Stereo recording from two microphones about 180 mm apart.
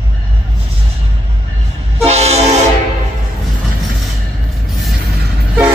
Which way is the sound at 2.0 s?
35° right (ahead or behind).